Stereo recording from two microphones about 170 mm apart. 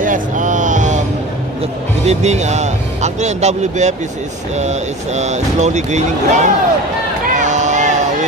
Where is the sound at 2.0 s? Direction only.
40° right (ahead or behind).